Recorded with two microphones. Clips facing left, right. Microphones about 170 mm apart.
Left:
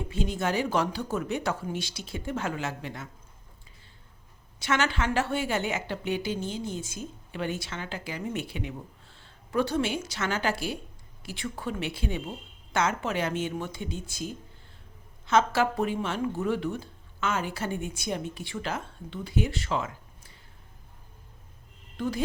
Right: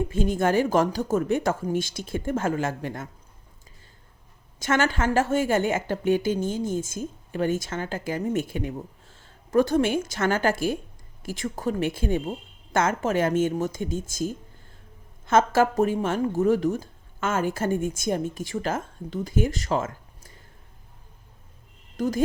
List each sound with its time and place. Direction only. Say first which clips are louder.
0.1 s a woman's voice: right 4 dB; 50° right (ahead or behind)
4.6 s a woman's voice: right 4 dB; 45° right (ahead or behind)
21.9 s speech: right 5 dB; 40° right (ahead or behind)